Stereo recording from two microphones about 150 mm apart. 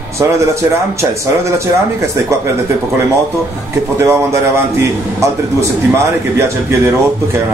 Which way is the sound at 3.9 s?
15° right (ahead or behind).